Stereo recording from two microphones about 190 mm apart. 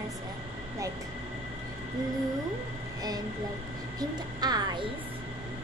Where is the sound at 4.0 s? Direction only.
20° right (ahead or behind).